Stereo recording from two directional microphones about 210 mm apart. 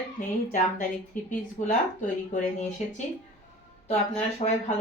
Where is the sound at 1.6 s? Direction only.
35° left (ahead or behind).